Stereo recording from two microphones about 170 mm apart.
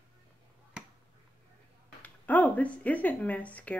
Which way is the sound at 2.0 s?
10° left (ahead or behind).